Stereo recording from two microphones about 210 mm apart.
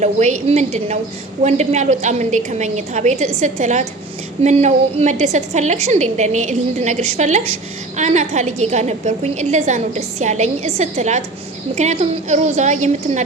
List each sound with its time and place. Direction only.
0.0 s a woman's voice: 35° right (ahead or behind)